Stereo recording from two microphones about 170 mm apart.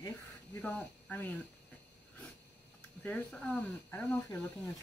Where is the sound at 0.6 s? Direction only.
5° left (ahead or behind).